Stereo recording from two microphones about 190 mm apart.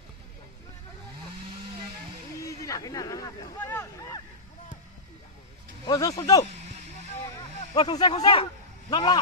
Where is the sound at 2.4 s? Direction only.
15° left (ahead or behind).